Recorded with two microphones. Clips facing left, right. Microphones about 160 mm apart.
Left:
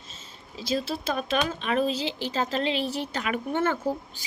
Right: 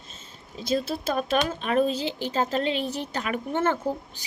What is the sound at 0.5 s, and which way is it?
Speech, 50° right (ahead or behind).